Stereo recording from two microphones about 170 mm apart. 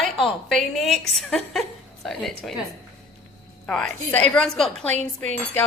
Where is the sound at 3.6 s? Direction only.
5° left (ahead or behind).